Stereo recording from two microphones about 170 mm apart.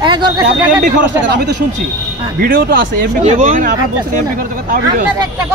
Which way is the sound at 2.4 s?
55° right (ahead or behind).